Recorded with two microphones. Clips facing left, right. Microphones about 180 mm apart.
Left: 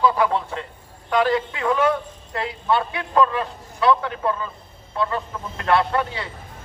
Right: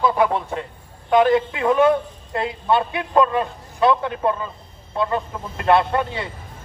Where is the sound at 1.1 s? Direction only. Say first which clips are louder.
Right 4 dB; 20° right (ahead or behind).